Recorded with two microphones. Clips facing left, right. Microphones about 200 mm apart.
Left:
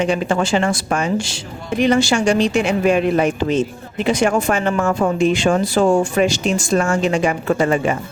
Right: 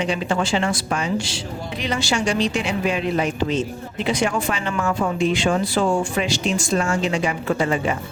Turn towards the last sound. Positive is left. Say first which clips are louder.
# left 4 dB
turn(degrees=50)  # may be behind; listen again after turning